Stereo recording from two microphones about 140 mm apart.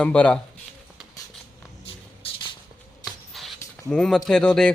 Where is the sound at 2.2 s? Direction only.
40° left (ahead or behind).